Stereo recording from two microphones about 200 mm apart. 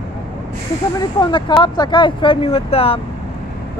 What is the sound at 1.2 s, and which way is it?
Speech, 25° left (ahead or behind).